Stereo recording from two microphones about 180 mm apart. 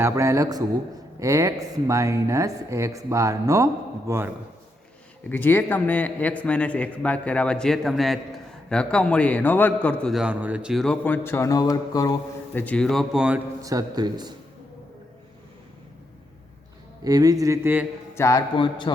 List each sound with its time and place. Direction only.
0.0 s a woman's voice: 15° right (ahead or behind)
5.3 s a man's voice: 10° left (ahead or behind)
12.5 s a man's voice: 5° left (ahead or behind)
13.6 s speech: 20° right (ahead or behind)
17.0 s speech: 20° right (ahead or behind)
18.1 s a man's voice: 15° left (ahead or behind)